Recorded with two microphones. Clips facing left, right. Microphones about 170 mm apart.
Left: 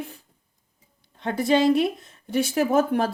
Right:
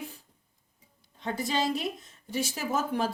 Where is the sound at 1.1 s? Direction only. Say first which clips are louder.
Left 9 dB; 65° left (ahead or behind).